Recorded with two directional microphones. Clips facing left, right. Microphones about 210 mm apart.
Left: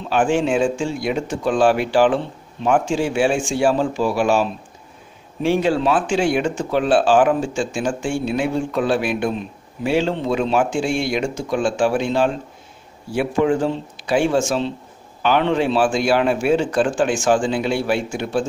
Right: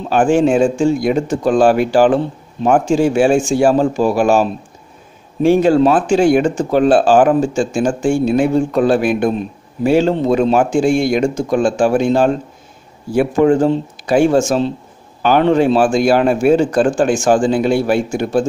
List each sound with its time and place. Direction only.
0.0 s speech: 45° right (ahead or behind)